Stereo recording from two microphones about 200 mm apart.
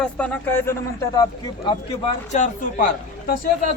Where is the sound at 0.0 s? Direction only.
10° left (ahead or behind); by 2.5 s 30° left (ahead or behind).